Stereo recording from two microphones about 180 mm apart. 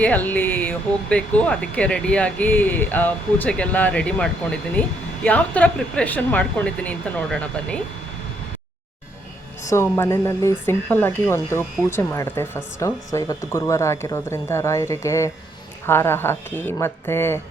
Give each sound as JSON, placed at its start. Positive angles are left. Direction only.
{"t": 0.0, "sound": "speech", "side_deg": 10}
{"t": 9.6, "sound": "speech", "side_deg": 15}